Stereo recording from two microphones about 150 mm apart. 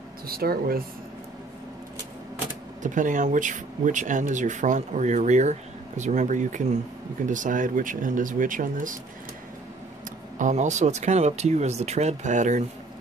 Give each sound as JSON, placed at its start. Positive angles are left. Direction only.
{"t": 0.3, "sound": "speech", "side_deg": -90}
{"t": 2.8, "sound": "speech", "side_deg": -60}
{"t": 10.4, "sound": "speech", "side_deg": -50}